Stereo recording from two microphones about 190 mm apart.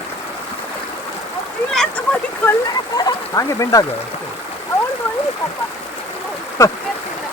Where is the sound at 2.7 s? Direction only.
20° left (ahead or behind).